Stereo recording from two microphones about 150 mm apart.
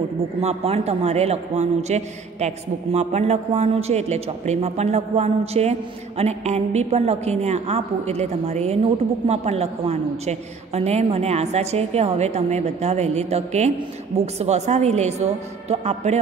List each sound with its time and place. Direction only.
0.4 s a man's voice: 45° right (ahead or behind)